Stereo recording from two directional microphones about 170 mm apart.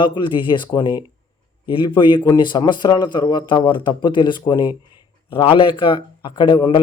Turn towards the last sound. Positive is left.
turn(degrees=30)  # may be behind; listen again after turning